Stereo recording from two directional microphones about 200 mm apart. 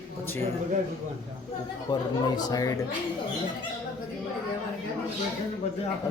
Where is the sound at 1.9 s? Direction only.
20° left (ahead or behind).